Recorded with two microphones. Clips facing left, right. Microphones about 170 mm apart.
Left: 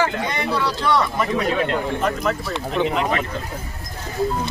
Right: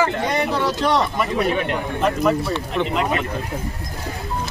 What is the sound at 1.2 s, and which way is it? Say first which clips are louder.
A man's voice: even; 10° right (ahead or behind).